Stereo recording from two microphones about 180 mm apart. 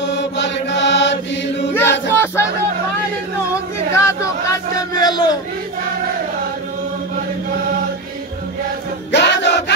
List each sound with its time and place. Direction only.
0.0 s mantra: 80° left
1.7 s chant: 15° left (ahead or behind)
3.9 s a sound: 15° left (ahead or behind)
9.1 s music: 75° left (ahead or behind)